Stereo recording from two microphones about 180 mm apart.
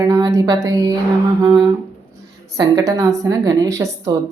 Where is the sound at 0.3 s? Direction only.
20° right (ahead or behind).